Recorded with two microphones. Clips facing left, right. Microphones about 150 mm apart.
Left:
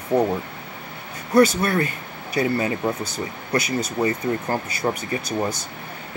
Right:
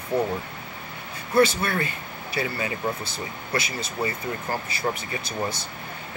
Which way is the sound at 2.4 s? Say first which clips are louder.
Left 7 dB; 40° left (ahead or behind).